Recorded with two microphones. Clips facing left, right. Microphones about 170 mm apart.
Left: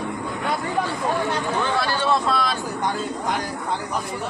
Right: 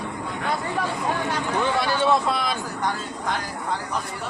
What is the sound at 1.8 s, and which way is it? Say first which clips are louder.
Speech: right 1 dB; 15° right (ahead or behind).